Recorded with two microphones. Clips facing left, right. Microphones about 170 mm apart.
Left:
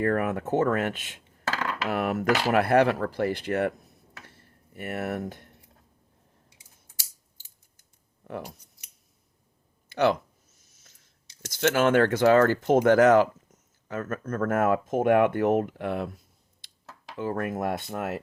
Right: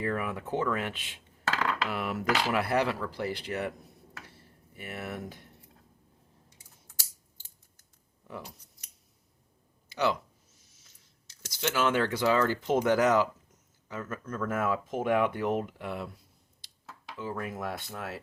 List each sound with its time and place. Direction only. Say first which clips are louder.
0.0 s speech: left 7 dB; 50° left (ahead or behind)
4.8 s speech: left 7 dB; 50° left (ahead or behind)
8.2 s speech: left 6 dB; 60° left (ahead or behind)
9.9 s speech: left 6 dB; 55° left (ahead or behind)
10.7 s a sound: left 2 dB; 45° left (ahead or behind)
11.4 s speech: left 6 dB; 55° left (ahead or behind)
16.6 s a sound: left 1 dB; 55° left (ahead or behind)
17.2 s speech: left 7 dB; 55° left (ahead or behind)